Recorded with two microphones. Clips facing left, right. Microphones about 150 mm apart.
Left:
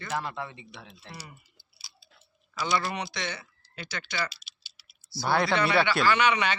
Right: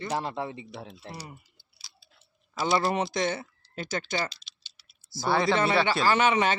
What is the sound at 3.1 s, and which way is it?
Speech, 45° right (ahead or behind).